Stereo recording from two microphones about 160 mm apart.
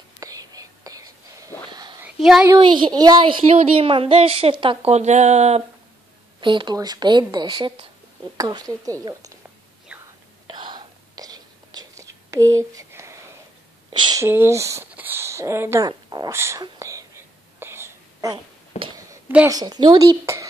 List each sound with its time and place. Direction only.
0.2 s whispering: 20° right (ahead or behind)
2.1 s speech: 5° right (ahead or behind)
2.4 s a woman's voice: 25° right (ahead or behind); by 5.6 s 45° right (ahead or behind)
6.4 s speech: 30° right (ahead or behind)
9.9 s whispering: 10° right (ahead or behind)
10.4 s whispering: 30° right (ahead or behind)
12.3 s a sound: 20° right (ahead or behind)
13.9 s a sound: 30° right (ahead or behind)
14.2 s speech: 15° right (ahead or behind)
15.9 s speech: 25° right (ahead or behind)
16.3 s speech: 15° right (ahead or behind)
16.6 s whispering: 20° right (ahead or behind)
18.8 s a sound: 25° right (ahead or behind)
19.5 s speech: 25° right (ahead or behind)